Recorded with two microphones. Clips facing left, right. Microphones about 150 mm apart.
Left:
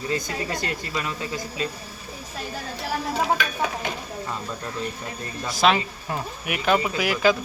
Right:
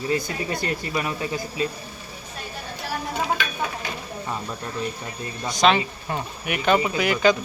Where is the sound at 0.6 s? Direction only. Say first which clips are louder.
Right 3 dB; 20° right (ahead or behind).